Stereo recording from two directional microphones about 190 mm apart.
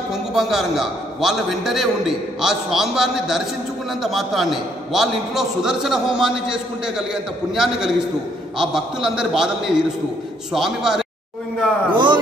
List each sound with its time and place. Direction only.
0.1 s a man's voice: centre (ahead or behind)
11.9 s a man's voice: 25° right (ahead or behind)